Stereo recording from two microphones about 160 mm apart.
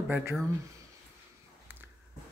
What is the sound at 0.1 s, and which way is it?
Speech, 15° right (ahead or behind).